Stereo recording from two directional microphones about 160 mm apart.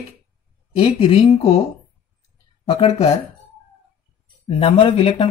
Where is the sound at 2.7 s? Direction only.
40° left (ahead or behind).